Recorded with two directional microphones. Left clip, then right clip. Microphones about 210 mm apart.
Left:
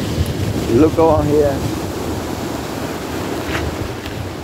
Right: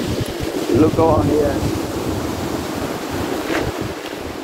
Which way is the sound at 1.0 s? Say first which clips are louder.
Left 3 dB; 20° left (ahead or behind).